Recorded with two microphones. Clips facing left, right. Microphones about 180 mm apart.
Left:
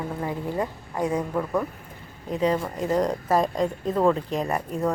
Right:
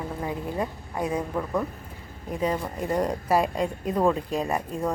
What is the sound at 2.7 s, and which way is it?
A woman's voice, 10° right (ahead or behind).